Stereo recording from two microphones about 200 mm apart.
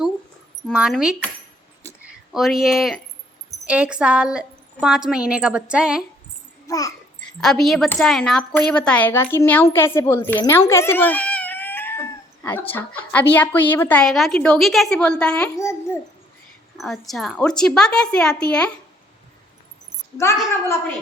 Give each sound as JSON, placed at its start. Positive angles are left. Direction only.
{"t": 0.7, "sound": "a woman's voice", "side_deg": -5}
{"t": 2.3, "sound": "a woman's voice", "side_deg": 0}
{"t": 6.7, "sound": "babbling", "side_deg": 15}
{"t": 7.2, "sound": "a woman's voice", "side_deg": 5}
{"t": 16.7, "sound": "a woman's voice", "side_deg": 0}
{"t": 20.2, "sound": "a woman's voice", "side_deg": 15}